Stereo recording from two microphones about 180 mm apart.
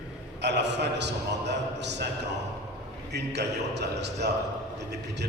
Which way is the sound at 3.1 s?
70° right (ahead or behind).